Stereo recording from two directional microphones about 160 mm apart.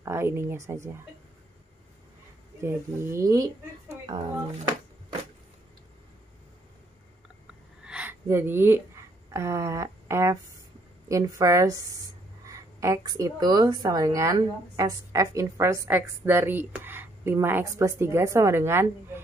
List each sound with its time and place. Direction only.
0.0 s a woman's voice: 15° right (ahead or behind)
2.6 s speech: 15° right (ahead or behind)
7.8 s a sound: 5° right (ahead or behind)
9.3 s a woman's voice: 20° right (ahead or behind)